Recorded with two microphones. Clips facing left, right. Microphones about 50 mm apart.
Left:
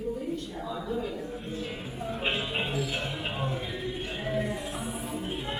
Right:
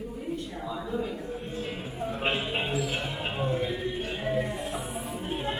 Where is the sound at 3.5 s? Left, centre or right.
Right.